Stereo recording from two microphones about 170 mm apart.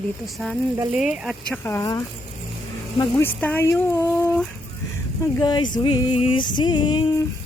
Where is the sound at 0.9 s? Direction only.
5° right (ahead or behind).